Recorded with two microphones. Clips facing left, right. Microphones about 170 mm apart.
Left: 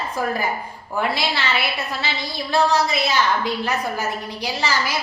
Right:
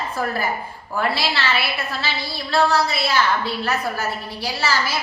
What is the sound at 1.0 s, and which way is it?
Speech, 15° left (ahead or behind).